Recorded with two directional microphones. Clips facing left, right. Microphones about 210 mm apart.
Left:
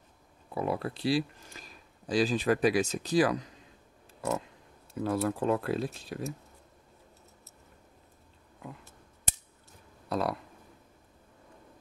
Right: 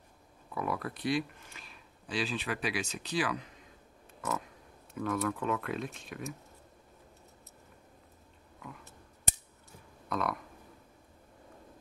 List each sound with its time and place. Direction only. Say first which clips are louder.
0.5 s speech: left 4 dB; 30° left (ahead or behind)
4.2 s a sound: left 4 dB; 25° left (ahead or behind)
4.9 s speech: left 3 dB; 30° left (ahead or behind)
10.0 s speech: left 3 dB; 30° left (ahead or behind)